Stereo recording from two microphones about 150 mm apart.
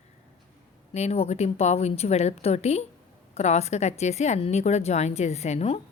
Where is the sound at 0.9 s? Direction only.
45° left (ahead or behind).